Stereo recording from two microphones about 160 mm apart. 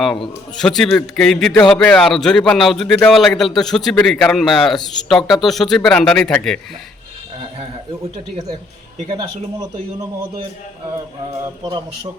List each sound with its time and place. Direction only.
0.0 s a man's voice: centre (ahead or behind)
9.1 s a man's voice: 20° right (ahead or behind)